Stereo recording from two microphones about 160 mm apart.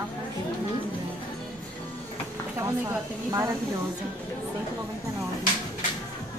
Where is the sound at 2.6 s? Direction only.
15° right (ahead or behind).